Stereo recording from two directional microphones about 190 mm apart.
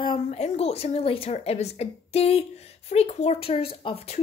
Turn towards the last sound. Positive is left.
turn(degrees=30)  # may be behind; listen again after turning